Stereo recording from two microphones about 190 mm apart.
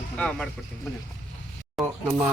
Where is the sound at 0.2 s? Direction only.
5° left (ahead or behind).